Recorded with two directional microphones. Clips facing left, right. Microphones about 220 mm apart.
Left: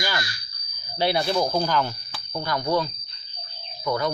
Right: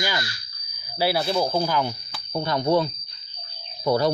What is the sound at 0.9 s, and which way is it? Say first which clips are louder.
Speech: even; 5° right (ahead or behind).